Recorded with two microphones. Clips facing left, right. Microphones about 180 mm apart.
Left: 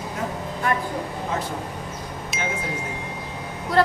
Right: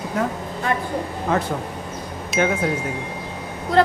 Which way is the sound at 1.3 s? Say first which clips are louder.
Right 7 dB; 60° right (ahead or behind).